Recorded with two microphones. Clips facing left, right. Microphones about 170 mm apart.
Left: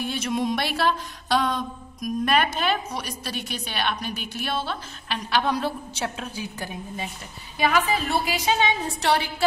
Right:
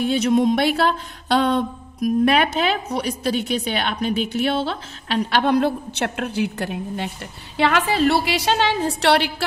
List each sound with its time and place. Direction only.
0.1 s a woman's voice: 60° right (ahead or behind); by 9.3 s 75° right (ahead or behind)